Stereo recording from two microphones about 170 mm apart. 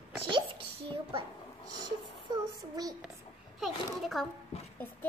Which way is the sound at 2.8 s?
20° right (ahead or behind).